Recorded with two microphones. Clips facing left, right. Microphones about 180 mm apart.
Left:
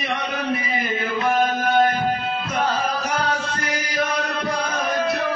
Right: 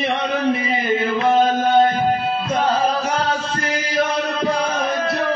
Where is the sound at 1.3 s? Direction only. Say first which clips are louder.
Right 4 dB; 30° right (ahead or behind).